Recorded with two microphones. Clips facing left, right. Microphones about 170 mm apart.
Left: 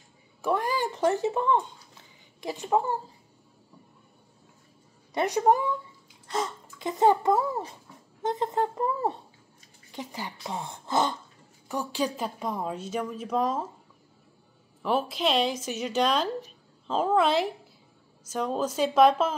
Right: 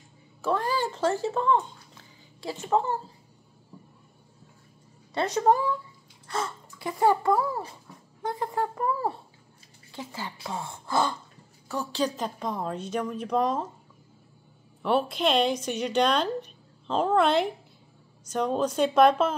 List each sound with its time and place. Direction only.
0.4 s a sound: 15° left (ahead or behind)
5.1 s a woman's voice: 15° left (ahead or behind)
14.8 s a woman's voice: 5° left (ahead or behind)